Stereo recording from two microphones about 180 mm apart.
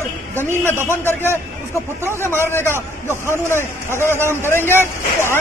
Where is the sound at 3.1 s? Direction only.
15° left (ahead or behind).